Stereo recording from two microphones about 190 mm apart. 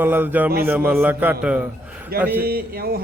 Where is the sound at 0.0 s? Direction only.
10° right (ahead or behind).